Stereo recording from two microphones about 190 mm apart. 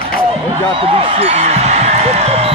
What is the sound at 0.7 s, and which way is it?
Music, 30° right (ahead or behind).